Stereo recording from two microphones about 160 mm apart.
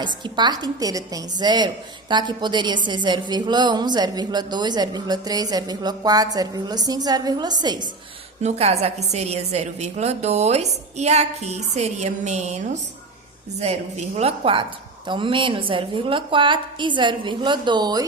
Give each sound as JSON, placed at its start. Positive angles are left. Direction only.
{"t": 0.0, "sound": "a woman's voice", "side_deg": -30}
{"t": 8.4, "sound": "a woman's voice", "side_deg": -45}
{"t": 14.2, "sound": "a woman's voice", "side_deg": -35}